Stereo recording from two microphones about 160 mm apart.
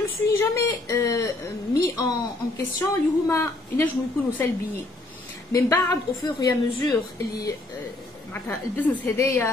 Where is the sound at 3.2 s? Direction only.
15° left (ahead or behind).